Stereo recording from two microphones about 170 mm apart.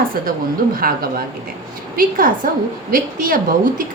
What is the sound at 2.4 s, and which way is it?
Speech, 60° right (ahead or behind).